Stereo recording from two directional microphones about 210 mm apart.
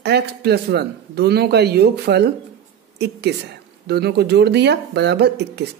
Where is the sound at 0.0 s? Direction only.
50° right (ahead or behind).